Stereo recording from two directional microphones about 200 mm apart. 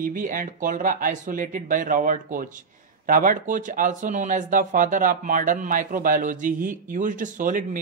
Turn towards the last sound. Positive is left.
turn(degrees=-40)  # may be behind; listen again after turning